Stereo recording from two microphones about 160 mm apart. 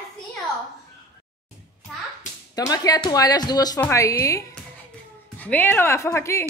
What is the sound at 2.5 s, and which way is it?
Speech, 25° left (ahead or behind).